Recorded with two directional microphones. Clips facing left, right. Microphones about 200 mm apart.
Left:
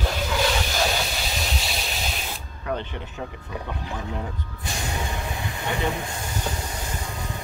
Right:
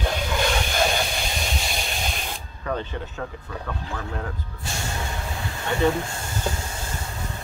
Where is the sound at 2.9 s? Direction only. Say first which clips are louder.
Right 2 dB; 15° left (ahead or behind).